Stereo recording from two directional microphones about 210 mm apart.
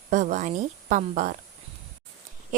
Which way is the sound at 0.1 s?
35° right (ahead or behind).